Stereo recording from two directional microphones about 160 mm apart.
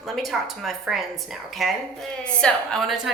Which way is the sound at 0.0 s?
Centre (ahead or behind).